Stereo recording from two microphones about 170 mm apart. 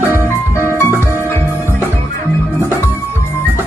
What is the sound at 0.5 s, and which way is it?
Music, 15° left (ahead or behind).